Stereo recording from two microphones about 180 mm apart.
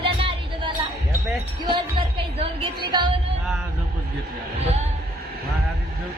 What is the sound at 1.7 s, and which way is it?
A woman's voice, 30° right (ahead or behind).